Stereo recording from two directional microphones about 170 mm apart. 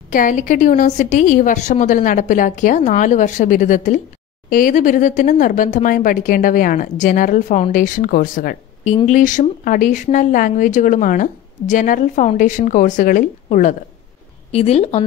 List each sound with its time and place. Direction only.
0.1 s speech: 50° left (ahead or behind)
14.5 s speech: 35° left (ahead or behind)